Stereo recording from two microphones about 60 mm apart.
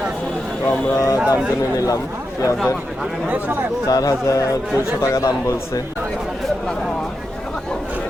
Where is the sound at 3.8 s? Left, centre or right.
Left.